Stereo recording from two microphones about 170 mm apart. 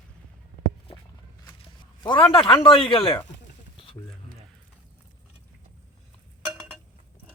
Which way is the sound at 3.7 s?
30° left (ahead or behind).